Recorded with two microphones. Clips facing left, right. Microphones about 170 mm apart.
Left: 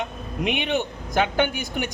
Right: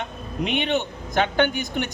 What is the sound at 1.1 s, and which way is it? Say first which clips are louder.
Speech: right 1 dB; 5° left (ahead or behind).